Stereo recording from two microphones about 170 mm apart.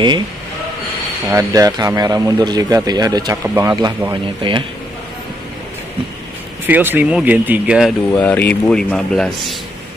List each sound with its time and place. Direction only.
1.3 s speech: 20° right (ahead or behind)
6.6 s speech: 10° right (ahead or behind)
8.1 s speech: 10° left (ahead or behind)